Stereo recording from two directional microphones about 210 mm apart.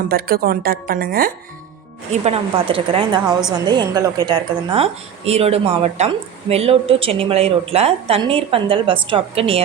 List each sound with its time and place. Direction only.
0.1 s a woman's voice: 45° right (ahead or behind)
2.2 s a woman's voice: 25° right (ahead or behind)